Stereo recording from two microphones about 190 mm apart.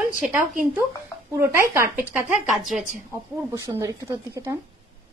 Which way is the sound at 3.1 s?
15° right (ahead or behind).